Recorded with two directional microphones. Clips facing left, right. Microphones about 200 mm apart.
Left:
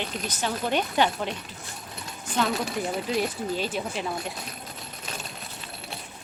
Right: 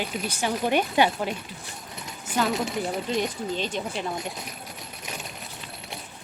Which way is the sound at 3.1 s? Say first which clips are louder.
Even; 5° left (ahead or behind).